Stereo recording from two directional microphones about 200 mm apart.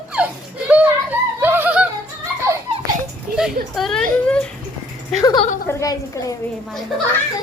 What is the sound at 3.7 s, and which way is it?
Speech, centre (ahead or behind).